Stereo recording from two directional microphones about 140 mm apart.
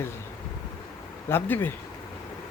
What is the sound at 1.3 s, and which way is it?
Speech, 15° left (ahead or behind).